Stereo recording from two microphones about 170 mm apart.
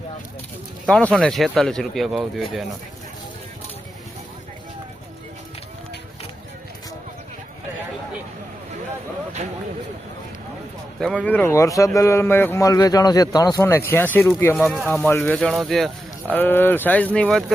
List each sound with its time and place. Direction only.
0.9 s speech: 5° left (ahead or behind)
11.0 s speech: 5° left (ahead or behind)
14.5 s speech: centre (ahead or behind)
16.3 s speech: 10° left (ahead or behind)